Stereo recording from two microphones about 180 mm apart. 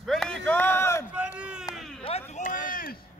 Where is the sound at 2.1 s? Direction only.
45° left (ahead or behind).